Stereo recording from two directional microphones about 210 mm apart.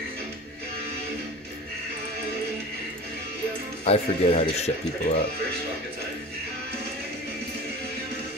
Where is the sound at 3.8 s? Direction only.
30° left (ahead or behind).